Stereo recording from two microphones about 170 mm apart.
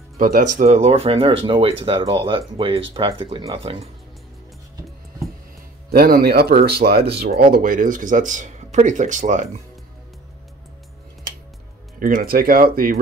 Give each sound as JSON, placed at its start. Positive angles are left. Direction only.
{"t": 0.2, "sound": "speech", "side_deg": -55}
{"t": 5.9, "sound": "speech", "side_deg": -65}
{"t": 7.5, "sound": "speech", "side_deg": -55}
{"t": 12.0, "sound": "speech", "side_deg": -60}